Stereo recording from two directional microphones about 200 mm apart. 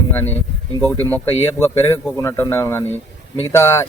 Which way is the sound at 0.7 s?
20° right (ahead or behind).